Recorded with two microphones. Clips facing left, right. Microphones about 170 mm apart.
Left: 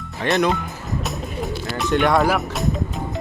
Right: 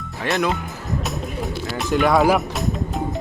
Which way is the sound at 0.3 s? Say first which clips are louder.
Left 2 dB; centre (ahead or behind).